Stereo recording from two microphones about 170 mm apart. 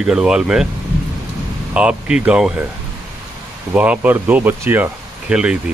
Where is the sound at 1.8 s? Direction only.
5° right (ahead or behind).